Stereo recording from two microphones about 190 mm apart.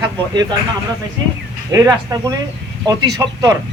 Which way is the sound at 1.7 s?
15° right (ahead or behind).